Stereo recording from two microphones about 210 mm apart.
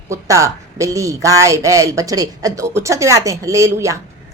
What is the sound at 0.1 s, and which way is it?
Speech, 15° right (ahead or behind).